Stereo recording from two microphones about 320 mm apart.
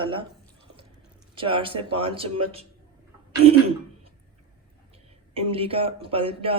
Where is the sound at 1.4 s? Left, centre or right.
Centre.